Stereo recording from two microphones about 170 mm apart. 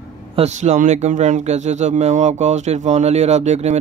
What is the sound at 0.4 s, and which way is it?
Speech, 40° right (ahead or behind).